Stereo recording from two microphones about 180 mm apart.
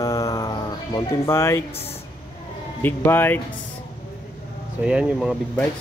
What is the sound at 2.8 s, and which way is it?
Speech, 10° left (ahead or behind).